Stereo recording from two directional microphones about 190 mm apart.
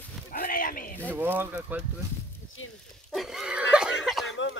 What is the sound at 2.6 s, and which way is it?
Dog, 90° left.